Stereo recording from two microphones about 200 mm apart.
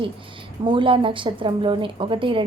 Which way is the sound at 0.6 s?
25° right (ahead or behind).